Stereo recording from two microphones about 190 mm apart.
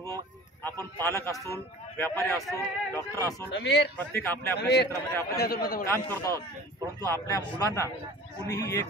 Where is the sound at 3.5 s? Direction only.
60° left (ahead or behind).